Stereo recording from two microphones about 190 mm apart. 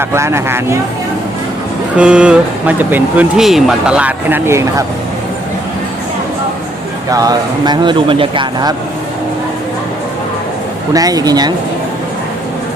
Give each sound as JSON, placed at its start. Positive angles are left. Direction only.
{"t": 0.0, "sound": "speech", "side_deg": -15}
{"t": 2.0, "sound": "speech", "side_deg": -5}
{"t": 7.1, "sound": "speech", "side_deg": -20}
{"t": 10.9, "sound": "speech", "side_deg": -20}